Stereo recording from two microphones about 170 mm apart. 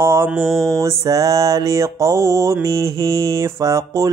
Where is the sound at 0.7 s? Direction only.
20° right (ahead or behind).